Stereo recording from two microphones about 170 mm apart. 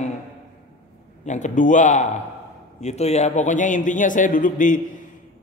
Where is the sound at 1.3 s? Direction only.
45° left (ahead or behind).